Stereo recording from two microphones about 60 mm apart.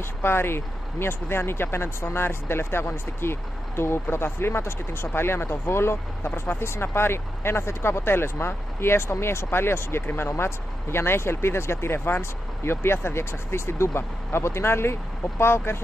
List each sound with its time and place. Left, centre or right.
0.2 s speech: left